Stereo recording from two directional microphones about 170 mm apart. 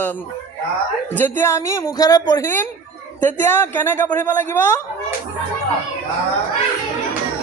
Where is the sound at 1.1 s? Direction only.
10° left (ahead or behind).